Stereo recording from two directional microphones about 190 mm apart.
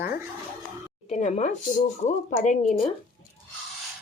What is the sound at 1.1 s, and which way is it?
A woman's voice, 40° left (ahead or behind).